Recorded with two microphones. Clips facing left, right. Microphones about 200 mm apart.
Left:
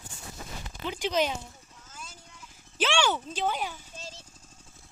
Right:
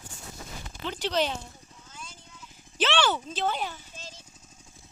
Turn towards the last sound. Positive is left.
turn(degrees=10)  # may be behind; listen again after turning